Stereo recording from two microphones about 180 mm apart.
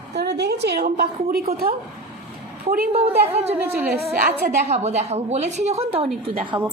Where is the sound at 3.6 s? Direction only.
10° right (ahead or behind).